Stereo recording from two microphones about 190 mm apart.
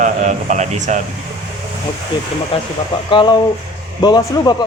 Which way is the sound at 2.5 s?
30° left (ahead or behind).